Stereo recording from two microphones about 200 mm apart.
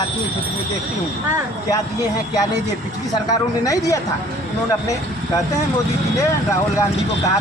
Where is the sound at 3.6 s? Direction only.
15° left (ahead or behind).